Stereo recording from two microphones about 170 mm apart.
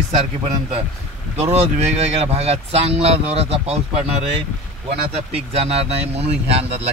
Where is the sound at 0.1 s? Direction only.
35° right (ahead or behind).